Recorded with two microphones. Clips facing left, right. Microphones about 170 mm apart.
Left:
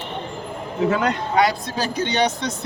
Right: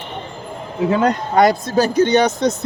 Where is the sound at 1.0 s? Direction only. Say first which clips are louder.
Right 5 dB; 45° right (ahead or behind).